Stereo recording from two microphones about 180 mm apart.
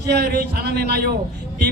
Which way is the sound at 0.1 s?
65° right (ahead or behind).